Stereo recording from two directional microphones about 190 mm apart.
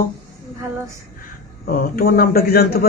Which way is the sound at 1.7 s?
50° left (ahead or behind).